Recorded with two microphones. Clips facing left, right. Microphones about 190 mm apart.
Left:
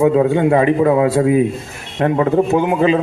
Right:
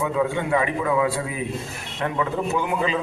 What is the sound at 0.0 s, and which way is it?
A man's voice, 35° left (ahead or behind).